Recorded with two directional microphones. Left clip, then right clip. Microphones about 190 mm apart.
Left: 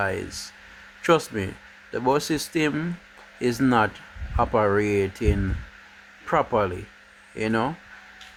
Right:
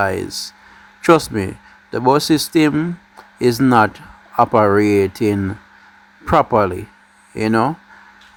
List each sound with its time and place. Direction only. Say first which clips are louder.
0.0 s speech: right 8 dB; 30° right (ahead or behind)